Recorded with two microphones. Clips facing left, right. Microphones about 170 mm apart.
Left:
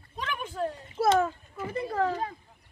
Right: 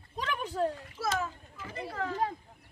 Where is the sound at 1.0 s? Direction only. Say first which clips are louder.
Left 10 dB; 30° left (ahead or behind).